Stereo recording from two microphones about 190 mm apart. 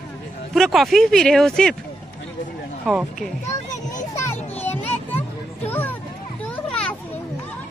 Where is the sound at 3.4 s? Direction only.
40° left (ahead or behind).